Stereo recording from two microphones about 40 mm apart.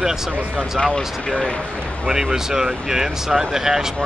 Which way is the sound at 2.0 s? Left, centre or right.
Centre.